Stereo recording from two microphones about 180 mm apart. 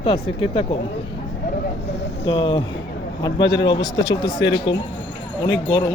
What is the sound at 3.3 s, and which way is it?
Speech, 80° left.